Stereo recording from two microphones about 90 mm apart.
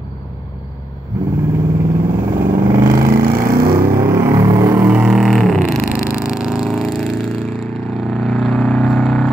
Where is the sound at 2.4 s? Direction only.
30° right (ahead or behind).